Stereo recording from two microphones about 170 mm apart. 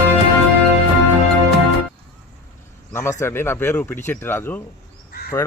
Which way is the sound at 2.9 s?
15° left (ahead or behind).